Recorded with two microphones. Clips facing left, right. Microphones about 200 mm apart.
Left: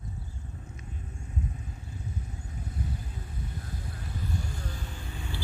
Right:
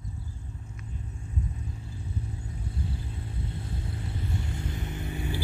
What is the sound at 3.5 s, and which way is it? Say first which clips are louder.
Vehicle: right 3 dB; 25° right (ahead or behind).